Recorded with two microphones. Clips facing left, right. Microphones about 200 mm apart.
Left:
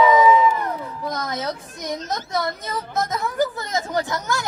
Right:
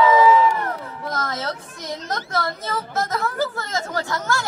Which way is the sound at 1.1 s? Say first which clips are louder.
Even; 20° left (ahead or behind).